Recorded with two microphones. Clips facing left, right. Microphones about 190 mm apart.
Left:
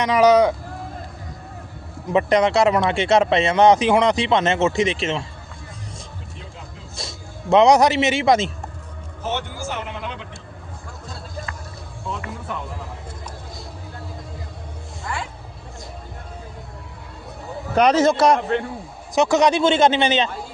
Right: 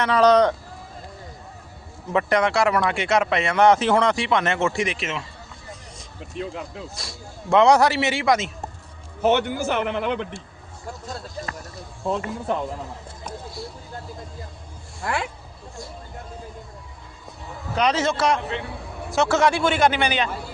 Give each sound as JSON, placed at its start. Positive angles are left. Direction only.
{"t": 0.0, "sound": "speech", "side_deg": 10}
{"t": 2.1, "sound": "speech", "side_deg": 20}
{"t": 7.0, "sound": "speech", "side_deg": 25}
{"t": 9.2, "sound": "a man's voice", "side_deg": -65}
{"t": 12.0, "sound": "speech", "side_deg": -35}
{"t": 15.0, "sound": "music", "side_deg": -65}
{"t": 17.7, "sound": "a man's voice", "side_deg": 45}
{"t": 19.1, "sound": "speech", "side_deg": 15}